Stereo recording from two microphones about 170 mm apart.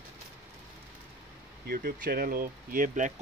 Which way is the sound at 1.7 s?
60° right (ahead or behind).